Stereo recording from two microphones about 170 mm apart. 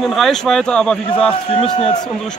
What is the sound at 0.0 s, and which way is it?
A man's voice, centre (ahead or behind).